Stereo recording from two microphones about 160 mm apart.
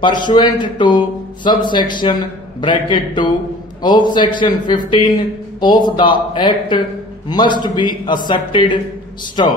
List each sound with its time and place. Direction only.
0.0 s a man's voice: 30° left (ahead or behind)